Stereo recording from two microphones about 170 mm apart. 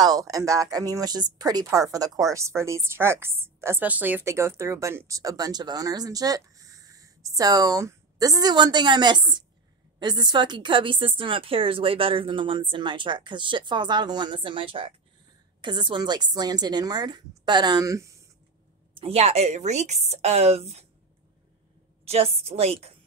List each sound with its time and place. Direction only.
0.0 s a woman's voice: 20° right (ahead or behind)
18.9 s speech: 35° right (ahead or behind)
22.0 s speech: 35° right (ahead or behind)